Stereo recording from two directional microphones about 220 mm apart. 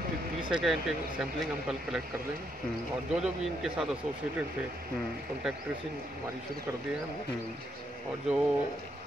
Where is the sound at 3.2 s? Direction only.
Centre (ahead or behind).